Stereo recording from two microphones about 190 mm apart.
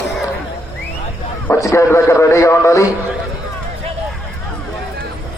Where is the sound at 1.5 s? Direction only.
15° left (ahead or behind).